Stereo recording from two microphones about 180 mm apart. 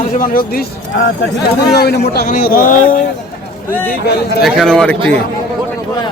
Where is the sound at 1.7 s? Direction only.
65° left (ahead or behind).